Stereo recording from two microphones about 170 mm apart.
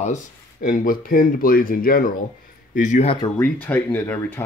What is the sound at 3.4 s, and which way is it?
Speech, 10° left (ahead or behind).